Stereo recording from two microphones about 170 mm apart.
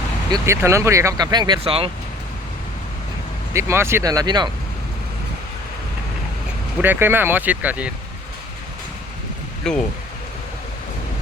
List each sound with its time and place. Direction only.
0.3 s speech: 20° right (ahead or behind)
3.5 s speech: 15° right (ahead or behind)
6.8 s speech: 10° right (ahead or behind)
9.7 s speech: 5° left (ahead or behind)